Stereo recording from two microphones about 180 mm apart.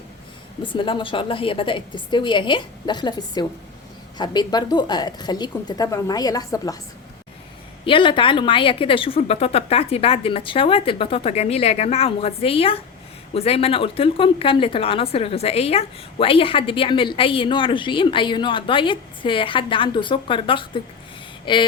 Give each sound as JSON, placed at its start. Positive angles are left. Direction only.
{"t": 0.6, "sound": "speech", "side_deg": 25}
{"t": 7.9, "sound": "a woman's voice", "side_deg": 30}
{"t": 21.4, "sound": "a sound", "side_deg": 25}